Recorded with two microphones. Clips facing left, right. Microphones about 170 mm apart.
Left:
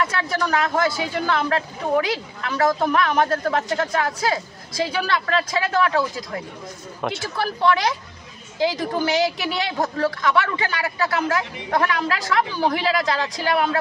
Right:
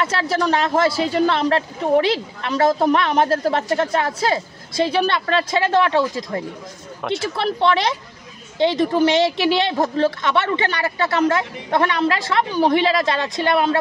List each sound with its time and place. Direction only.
0.0 s a woman's voice: 30° right (ahead or behind)
7.0 s speech: centre (ahead or behind)
8.5 s a woman's voice: 25° right (ahead or behind)